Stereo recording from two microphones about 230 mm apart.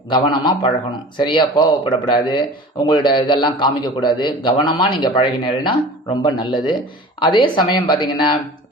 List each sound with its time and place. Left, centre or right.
0.1 s speech: left